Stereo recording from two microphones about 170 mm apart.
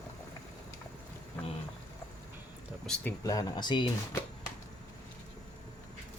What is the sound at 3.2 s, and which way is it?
Speech, 20° left (ahead or behind).